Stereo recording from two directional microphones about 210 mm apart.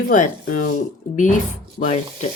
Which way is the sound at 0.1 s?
40° left (ahead or behind).